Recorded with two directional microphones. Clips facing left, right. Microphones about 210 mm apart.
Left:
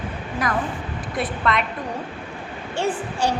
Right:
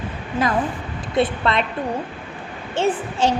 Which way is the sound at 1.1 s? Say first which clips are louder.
Right 4 dB; 30° right (ahead or behind).